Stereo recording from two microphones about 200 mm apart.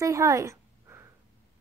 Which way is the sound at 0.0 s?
15° right (ahead or behind).